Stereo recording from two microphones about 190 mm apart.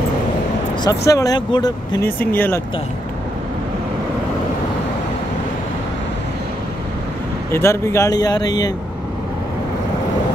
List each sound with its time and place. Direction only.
0.8 s speech: 20° left (ahead or behind)
2.0 s speech: 10° left (ahead or behind)
7.5 s speech: 15° left (ahead or behind)